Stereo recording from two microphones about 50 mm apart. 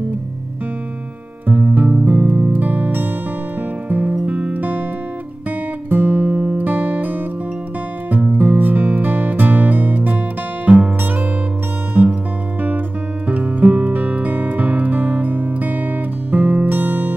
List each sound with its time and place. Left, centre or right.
1.5 s music: right
5.9 s music: right
12.0 s music: right
13.3 s music: right